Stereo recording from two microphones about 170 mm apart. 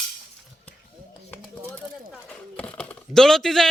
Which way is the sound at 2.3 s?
5° left (ahead or behind).